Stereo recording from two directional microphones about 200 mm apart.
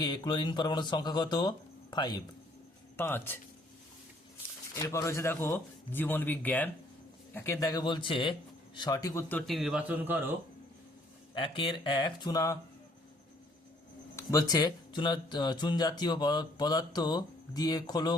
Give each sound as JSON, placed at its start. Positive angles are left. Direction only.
{"t": 0.0, "sound": "speech", "side_deg": 20}
{"t": 3.0, "sound": "a man's voice", "side_deg": 10}
{"t": 4.7, "sound": "a man's voice", "side_deg": 15}
{"t": 9.5, "sound": "a man's voice", "side_deg": 0}
{"t": 11.3, "sound": "speech", "side_deg": 25}
{"t": 14.2, "sound": "speech", "side_deg": 15}